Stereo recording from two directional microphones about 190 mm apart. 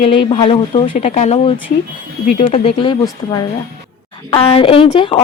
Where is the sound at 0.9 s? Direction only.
40° left (ahead or behind).